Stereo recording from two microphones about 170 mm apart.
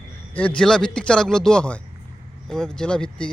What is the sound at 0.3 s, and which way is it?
Speech, 5° left (ahead or behind).